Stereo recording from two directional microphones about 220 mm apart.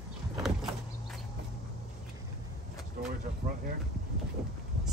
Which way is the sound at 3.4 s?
25° right (ahead or behind).